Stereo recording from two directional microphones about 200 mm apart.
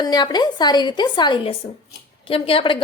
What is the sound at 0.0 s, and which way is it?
A woman's voice, 20° left (ahead or behind).